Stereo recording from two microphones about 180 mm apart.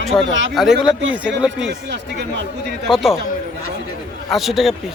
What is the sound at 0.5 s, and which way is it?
Speech, centre (ahead or behind).